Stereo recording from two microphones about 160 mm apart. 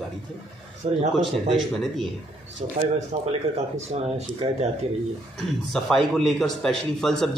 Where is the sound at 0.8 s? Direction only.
40° right (ahead or behind).